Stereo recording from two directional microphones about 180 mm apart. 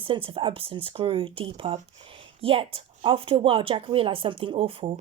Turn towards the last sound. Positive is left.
turn(degrees=-30)  # may be behind; listen again after turning